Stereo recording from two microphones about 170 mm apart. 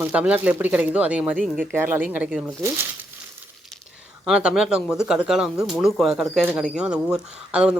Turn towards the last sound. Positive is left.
turn(degrees=-5)  # may be behind; listen again after turning